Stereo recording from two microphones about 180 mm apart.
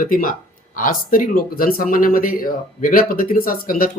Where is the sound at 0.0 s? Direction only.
50° left (ahead or behind).